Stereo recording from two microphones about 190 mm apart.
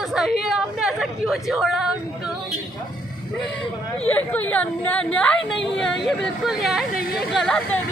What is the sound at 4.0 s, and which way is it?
Speech, 10° left (ahead or behind).